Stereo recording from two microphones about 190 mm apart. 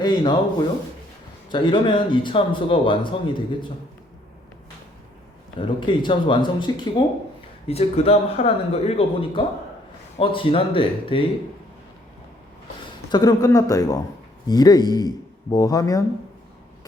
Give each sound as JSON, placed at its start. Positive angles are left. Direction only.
{"t": 0.0, "sound": "speech", "side_deg": 25}
{"t": 1.5, "sound": "speech", "side_deg": 25}
{"t": 5.5, "sound": "speech", "side_deg": 25}
{"t": 12.8, "sound": "speech", "side_deg": 20}